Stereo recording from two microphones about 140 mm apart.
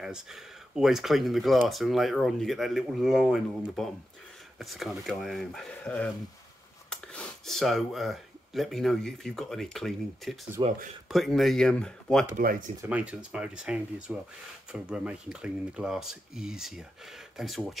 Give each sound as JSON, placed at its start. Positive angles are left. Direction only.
{"t": 0.0, "sound": "speech", "side_deg": -5}
{"t": 10.6, "sound": "speech", "side_deg": -30}
{"t": 11.1, "sound": "speech", "side_deg": 0}
{"t": 12.4, "sound": "speech", "side_deg": -90}
{"t": 12.8, "sound": "speech", "side_deg": -10}